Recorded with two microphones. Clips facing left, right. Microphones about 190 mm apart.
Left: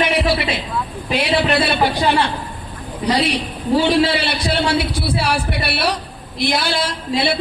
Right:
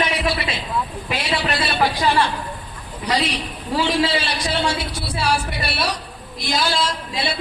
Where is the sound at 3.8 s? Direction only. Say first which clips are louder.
Left 3 dB; 60° left (ahead or behind).